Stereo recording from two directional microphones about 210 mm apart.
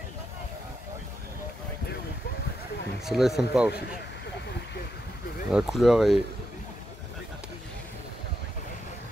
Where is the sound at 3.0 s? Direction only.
Centre (ahead or behind).